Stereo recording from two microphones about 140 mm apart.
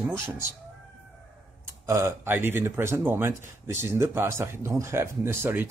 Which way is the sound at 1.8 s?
20° right (ahead or behind).